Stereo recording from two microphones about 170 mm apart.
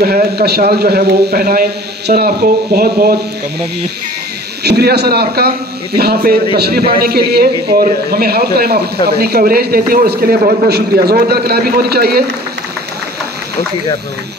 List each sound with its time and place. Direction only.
0.0 s a man's voice: 65° right (ahead or behind)
4.6 s a man's voice: 70° right (ahead or behind)